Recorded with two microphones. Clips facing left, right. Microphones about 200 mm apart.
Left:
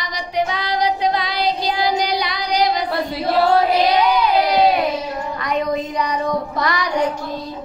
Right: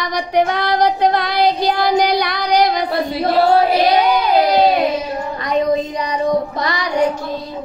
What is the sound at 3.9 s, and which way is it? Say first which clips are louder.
Child singing: right 2 dB; 50° right (ahead or behind).